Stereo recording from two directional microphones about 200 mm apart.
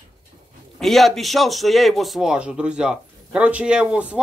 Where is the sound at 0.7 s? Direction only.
Centre (ahead or behind).